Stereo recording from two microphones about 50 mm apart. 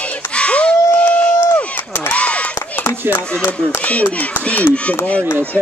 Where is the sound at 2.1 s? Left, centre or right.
Left.